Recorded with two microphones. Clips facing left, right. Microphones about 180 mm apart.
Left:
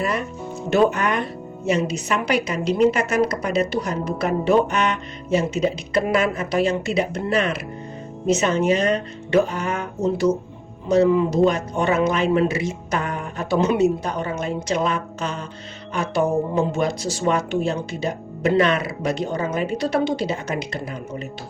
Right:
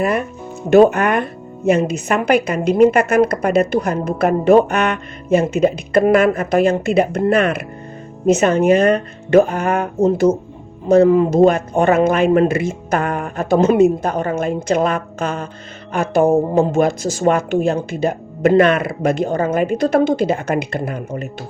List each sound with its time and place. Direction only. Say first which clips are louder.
0.0 s speech: right 6 dB; 55° right (ahead or behind)